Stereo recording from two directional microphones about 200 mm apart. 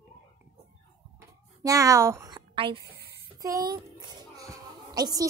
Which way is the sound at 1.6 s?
15° right (ahead or behind).